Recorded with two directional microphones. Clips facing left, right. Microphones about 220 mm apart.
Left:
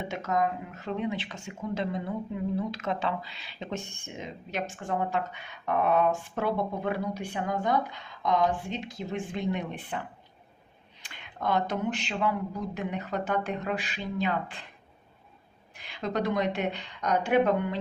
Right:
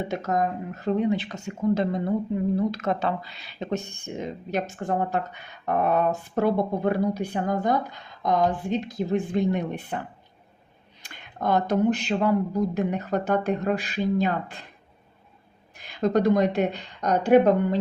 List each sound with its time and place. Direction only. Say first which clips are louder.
0.0 s speech: right 3 dB; 40° right (ahead or behind)
11.0 s speech: right 4 dB; 45° right (ahead or behind)
15.8 s speech: right 8 dB; 45° right (ahead or behind)